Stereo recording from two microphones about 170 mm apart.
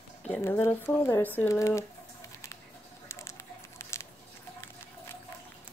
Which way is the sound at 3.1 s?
15° left (ahead or behind).